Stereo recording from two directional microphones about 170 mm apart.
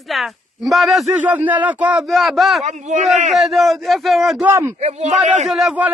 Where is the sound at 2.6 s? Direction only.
45° right (ahead or behind).